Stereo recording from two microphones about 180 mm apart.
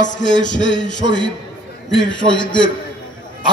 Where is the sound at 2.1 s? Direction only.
25° left (ahead or behind).